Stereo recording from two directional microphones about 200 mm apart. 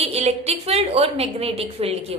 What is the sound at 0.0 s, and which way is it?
A woman's voice, 30° right (ahead or behind).